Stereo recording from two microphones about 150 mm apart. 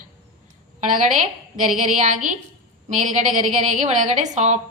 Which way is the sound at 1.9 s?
55° right (ahead or behind).